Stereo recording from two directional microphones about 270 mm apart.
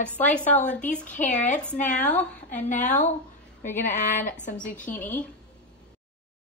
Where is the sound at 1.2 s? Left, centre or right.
Left.